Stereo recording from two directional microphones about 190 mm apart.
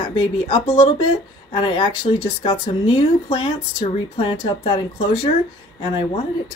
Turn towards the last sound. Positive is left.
turn(degrees=30)  # may be behind; listen again after turning